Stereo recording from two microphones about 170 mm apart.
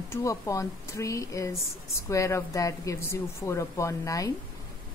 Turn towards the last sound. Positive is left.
turn(degrees=20)  # may be behind; listen again after turning